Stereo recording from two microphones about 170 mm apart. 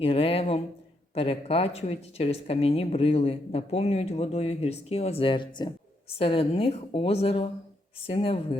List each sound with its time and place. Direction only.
0.0 s speech: 35° left (ahead or behind)